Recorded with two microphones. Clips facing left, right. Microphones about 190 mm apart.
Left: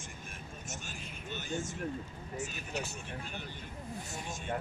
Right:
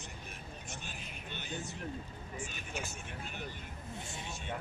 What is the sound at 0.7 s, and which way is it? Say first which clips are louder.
Speech: left 3 dB; 45° left (ahead or behind).